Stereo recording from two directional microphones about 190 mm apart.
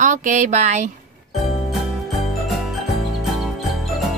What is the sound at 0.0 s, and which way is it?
Speech, 40° right (ahead or behind).